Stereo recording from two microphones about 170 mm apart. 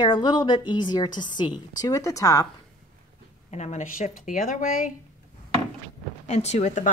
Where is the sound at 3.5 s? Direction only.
40° left (ahead or behind).